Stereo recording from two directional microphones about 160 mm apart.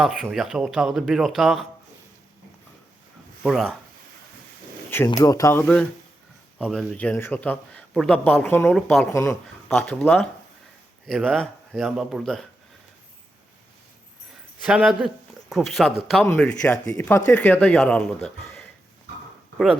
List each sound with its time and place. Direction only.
0.0 s speech: centre (ahead or behind)
3.4 s speech: centre (ahead or behind)
5.0 s speech: 20° left (ahead or behind)
6.6 s a man's voice: 5° left (ahead or behind)
9.1 s a man's voice: 15° left (ahead or behind)
9.6 s speech: 5° left (ahead or behind)
14.6 s a man's voice: 5° right (ahead or behind)